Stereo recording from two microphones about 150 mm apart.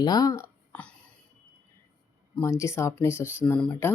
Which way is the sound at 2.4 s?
20° left (ahead or behind).